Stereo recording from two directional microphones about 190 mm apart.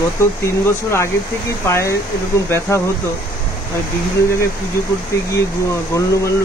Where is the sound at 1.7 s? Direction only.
15° left (ahead or behind).